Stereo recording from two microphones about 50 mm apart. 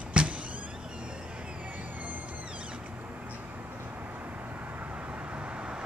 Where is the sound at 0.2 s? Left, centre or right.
Right.